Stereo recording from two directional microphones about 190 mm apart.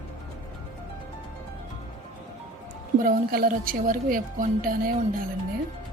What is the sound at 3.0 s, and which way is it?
A woman's voice, 50° right (ahead or behind).